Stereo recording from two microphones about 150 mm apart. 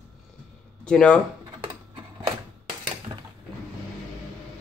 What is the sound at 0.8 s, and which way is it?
Speech, 5° left (ahead or behind).